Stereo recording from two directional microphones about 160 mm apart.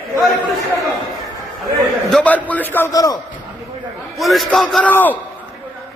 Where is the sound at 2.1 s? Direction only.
10° left (ahead or behind).